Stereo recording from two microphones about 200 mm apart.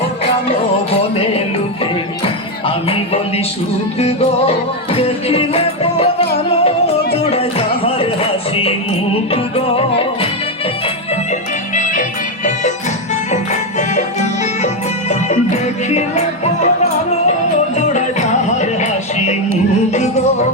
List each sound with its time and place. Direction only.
2.2 s music: 30° left (ahead or behind)
9.3 s music: 30° left (ahead or behind)
11.7 s music: 40° left (ahead or behind)
13.3 s music: 35° left (ahead or behind)
17.7 s music: 35° left (ahead or behind)